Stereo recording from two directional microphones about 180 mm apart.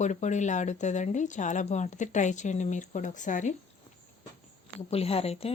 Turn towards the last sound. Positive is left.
turn(degrees=35)  # may be behind; listen again after turning